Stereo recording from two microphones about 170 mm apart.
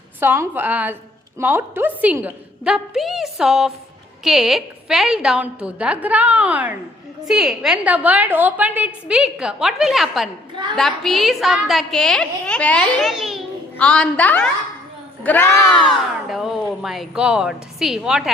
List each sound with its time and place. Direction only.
0.2 s a woman's voice: 10° right (ahead or behind)
10.5 s a woman's voice: 25° right (ahead or behind)
10.8 s a woman's voice: centre (ahead or behind)
15.9 s a woman's voice: centre (ahead or behind)